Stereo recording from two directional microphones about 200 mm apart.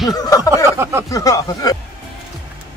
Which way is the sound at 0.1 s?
20° left (ahead or behind).